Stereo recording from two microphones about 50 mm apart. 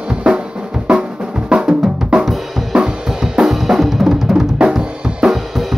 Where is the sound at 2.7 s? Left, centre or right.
Centre.